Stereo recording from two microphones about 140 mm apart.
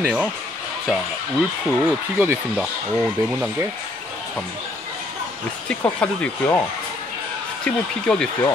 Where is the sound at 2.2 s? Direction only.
10° right (ahead or behind).